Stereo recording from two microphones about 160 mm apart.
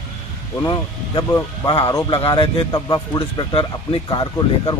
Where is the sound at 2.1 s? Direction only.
35° left (ahead or behind).